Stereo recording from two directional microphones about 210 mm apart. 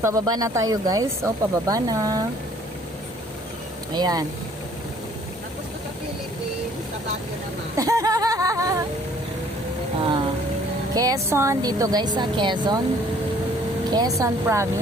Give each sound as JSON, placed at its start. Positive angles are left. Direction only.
{"t": 0.0, "sound": "speech", "side_deg": -15}
{"t": 3.9, "sound": "speech", "side_deg": -20}
{"t": 7.8, "sound": "a sound", "side_deg": -15}
{"t": 10.9, "sound": "speech", "side_deg": -15}
{"t": 13.9, "sound": "speech", "side_deg": -15}